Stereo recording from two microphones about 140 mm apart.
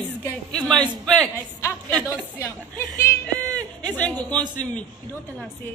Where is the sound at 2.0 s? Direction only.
15° left (ahead or behind).